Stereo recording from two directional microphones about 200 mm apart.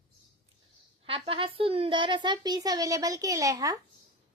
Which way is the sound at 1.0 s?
25° right (ahead or behind).